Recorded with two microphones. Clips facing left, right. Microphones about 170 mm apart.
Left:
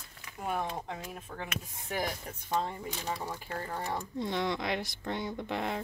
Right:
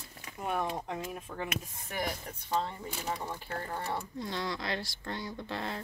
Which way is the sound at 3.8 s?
20° left (ahead or behind).